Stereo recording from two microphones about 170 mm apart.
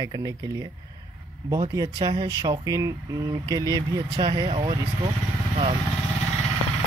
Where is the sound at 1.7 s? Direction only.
25° right (ahead or behind).